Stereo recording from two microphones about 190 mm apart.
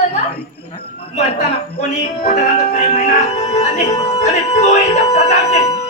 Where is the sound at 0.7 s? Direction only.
40° left (ahead or behind).